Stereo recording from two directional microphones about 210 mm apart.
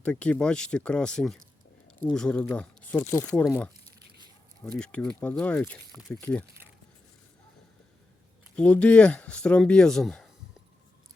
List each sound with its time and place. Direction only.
0.0 s speech: 5° left (ahead or behind)
4.6 s speech: 5° left (ahead or behind)
8.5 s speech: 5° left (ahead or behind)